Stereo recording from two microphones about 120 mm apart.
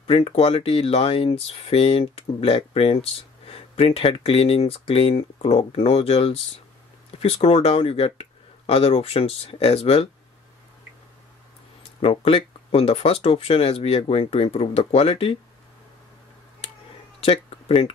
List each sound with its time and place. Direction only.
0.0 s speech: 55° left (ahead or behind)
12.0 s speech: 50° left (ahead or behind)
17.2 s speech: 55° left (ahead or behind)